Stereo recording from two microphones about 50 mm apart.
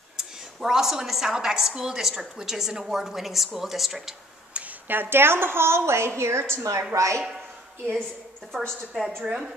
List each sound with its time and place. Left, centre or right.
0.2 s a woman's voice: centre
4.8 s a woman's voice: right
6.9 s speech: right
8.5 s a woman's voice: centre